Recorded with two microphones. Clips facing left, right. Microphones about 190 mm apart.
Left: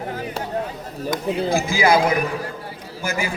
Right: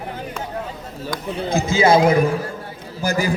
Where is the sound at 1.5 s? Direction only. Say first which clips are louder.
Right 4 dB; 20° right (ahead or behind).